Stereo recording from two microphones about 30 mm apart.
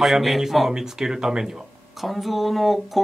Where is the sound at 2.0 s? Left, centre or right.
Centre.